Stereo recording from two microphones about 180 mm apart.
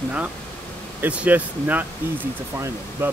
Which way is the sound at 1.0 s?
10° right (ahead or behind).